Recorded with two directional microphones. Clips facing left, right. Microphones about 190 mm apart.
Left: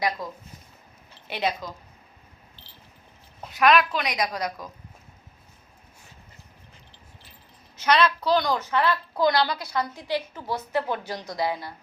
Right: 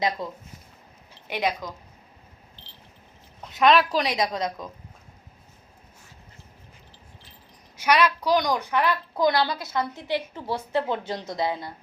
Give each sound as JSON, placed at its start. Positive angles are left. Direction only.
{"t": 0.2, "sound": "a woman's voice", "side_deg": -25}
{"t": 1.3, "sound": "speech", "side_deg": -15}
{"t": 3.5, "sound": "a woman's voice", "side_deg": -25}
{"t": 7.8, "sound": "a woman's voice", "side_deg": -10}